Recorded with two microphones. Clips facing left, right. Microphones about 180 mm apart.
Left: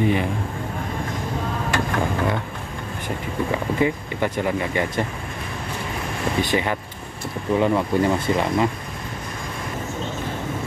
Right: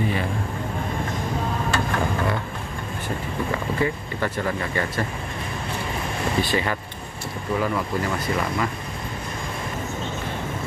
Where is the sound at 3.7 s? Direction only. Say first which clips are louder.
Left 3 dB; 15° left (ahead or behind).